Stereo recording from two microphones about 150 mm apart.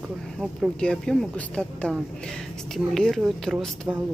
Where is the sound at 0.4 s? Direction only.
5° left (ahead or behind).